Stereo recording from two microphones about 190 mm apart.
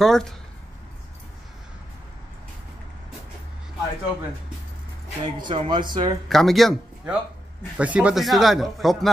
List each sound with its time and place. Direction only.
0.0 s a man's voice: centre (ahead or behind)
5.2 s speech: 25° right (ahead or behind)
6.2 s a man's voice: centre (ahead or behind)